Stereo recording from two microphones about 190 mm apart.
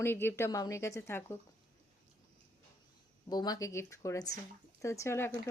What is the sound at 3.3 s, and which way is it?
Speech, 20° left (ahead or behind).